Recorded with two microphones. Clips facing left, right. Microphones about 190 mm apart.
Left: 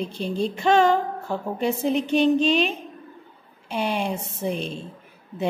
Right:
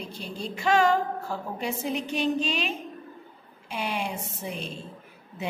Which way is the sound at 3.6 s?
30° left (ahead or behind).